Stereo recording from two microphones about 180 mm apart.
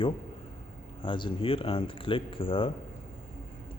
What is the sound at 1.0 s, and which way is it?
Speech, 30° left (ahead or behind).